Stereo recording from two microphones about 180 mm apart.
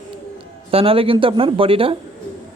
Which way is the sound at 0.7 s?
30° right (ahead or behind).